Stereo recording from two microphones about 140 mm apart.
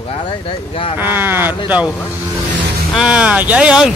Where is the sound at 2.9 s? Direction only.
5° right (ahead or behind).